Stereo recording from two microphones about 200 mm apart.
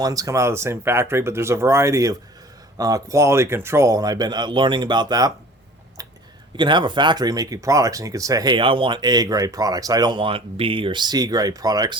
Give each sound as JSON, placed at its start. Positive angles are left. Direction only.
{"t": 0.0, "sound": "speech", "side_deg": -15}
{"t": 6.6, "sound": "speech", "side_deg": -25}